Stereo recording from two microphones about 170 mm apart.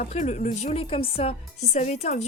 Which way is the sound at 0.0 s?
45° left (ahead or behind).